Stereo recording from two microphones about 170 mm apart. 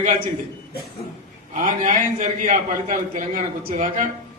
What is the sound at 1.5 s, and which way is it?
A man's voice, 50° right (ahead or behind).